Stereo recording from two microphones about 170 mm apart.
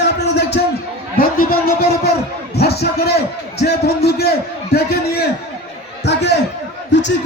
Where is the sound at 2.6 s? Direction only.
70° left (ahead or behind).